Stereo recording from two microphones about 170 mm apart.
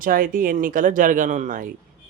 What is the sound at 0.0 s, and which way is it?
Speech, 55° right (ahead or behind).